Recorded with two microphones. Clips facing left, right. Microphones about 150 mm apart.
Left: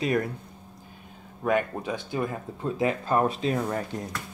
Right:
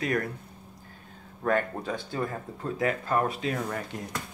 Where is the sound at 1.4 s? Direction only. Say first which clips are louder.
Left 1 dB; 15° left (ahead or behind).